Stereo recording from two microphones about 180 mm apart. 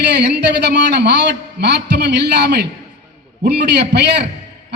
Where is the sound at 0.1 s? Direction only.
70° right (ahead or behind).